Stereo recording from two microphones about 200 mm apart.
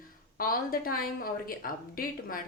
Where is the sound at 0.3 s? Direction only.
45° left (ahead or behind).